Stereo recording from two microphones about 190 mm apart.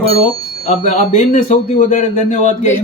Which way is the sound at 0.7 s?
40° left (ahead or behind).